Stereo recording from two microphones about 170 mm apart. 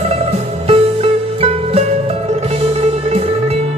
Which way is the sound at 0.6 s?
35° right (ahead or behind).